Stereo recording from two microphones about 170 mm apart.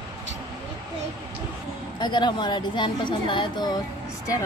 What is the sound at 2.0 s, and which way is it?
A woman's voice, 25° left (ahead or behind).